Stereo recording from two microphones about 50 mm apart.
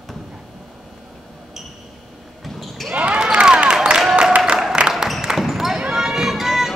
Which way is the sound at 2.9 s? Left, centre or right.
Right.